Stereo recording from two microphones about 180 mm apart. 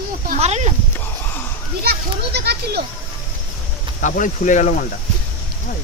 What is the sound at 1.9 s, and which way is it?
Speech, 65° right (ahead or behind).